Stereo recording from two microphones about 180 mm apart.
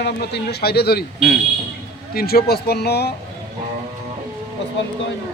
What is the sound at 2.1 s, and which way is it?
Speech, 60° left (ahead or behind).